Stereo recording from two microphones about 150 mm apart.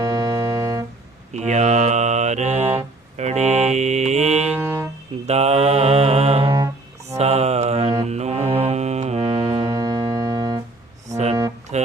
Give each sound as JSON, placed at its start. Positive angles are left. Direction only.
{"t": 0.0, "sound": "music", "side_deg": -25}
{"t": 1.3, "sound": "mantra", "side_deg": -50}
{"t": 4.5, "sound": "music", "side_deg": -15}
{"t": 5.2, "sound": "mantra", "side_deg": -45}
{"t": 8.0, "sound": "music", "side_deg": -45}
{"t": 9.6, "sound": "music", "side_deg": -25}
{"t": 11.7, "sound": "music", "side_deg": -50}